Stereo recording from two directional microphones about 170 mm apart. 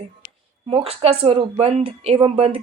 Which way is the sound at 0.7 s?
35° right (ahead or behind).